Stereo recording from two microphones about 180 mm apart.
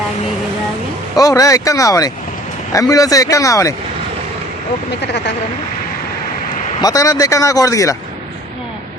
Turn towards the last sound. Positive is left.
turn(degrees=20)  # may be behind; listen again after turning